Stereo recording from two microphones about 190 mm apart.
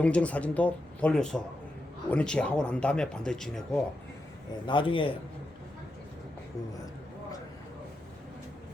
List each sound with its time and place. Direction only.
0.0 s speech: 5° left (ahead or behind)
4.6 s a man's voice: 25° left (ahead or behind)